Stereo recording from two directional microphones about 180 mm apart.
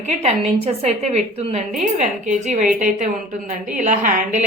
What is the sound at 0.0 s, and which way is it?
A woman's voice, 35° right (ahead or behind).